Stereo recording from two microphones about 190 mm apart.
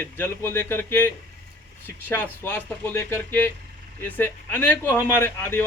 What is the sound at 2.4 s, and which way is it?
A man's voice, 10° left (ahead or behind).